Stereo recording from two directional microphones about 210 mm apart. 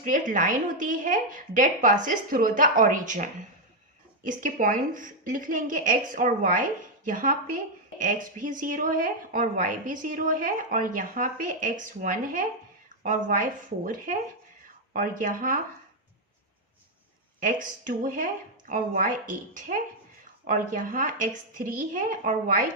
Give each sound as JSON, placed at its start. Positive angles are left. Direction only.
{"t": 0.0, "sound": "a woman's voice", "side_deg": -40}
{"t": 17.4, "sound": "a woman's voice", "side_deg": -40}